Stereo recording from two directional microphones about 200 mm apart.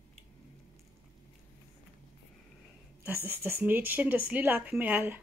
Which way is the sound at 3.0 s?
10° right (ahead or behind).